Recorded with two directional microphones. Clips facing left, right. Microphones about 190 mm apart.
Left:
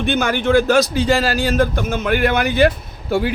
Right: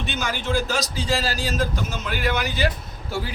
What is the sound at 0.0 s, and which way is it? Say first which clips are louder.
A man's voice: left 10 dB; 55° left (ahead or behind).